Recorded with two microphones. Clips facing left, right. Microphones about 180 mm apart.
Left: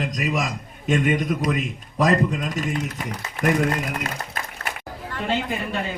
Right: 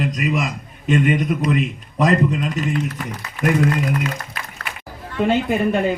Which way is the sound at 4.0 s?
50° left (ahead or behind).